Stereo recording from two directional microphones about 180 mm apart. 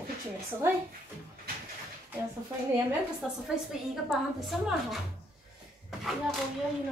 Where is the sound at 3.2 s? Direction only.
5° right (ahead or behind).